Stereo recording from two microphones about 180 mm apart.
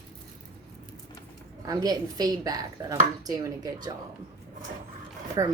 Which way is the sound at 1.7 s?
20° right (ahead or behind).